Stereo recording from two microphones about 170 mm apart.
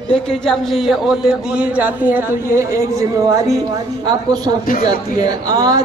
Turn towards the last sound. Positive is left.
turn(degrees=-25)  # may be behind; listen again after turning